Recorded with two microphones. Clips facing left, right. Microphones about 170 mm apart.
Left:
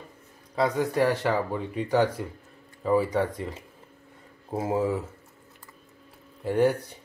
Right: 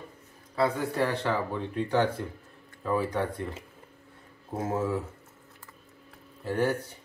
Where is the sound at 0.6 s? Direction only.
15° left (ahead or behind).